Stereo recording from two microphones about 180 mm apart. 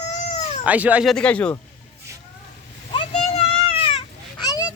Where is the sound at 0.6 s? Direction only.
10° right (ahead or behind).